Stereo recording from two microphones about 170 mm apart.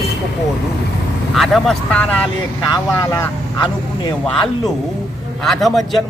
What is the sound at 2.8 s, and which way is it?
Speech, 20° left (ahead or behind).